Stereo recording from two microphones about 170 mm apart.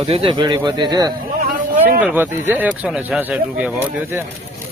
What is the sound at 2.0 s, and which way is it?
Speech, 10° right (ahead or behind).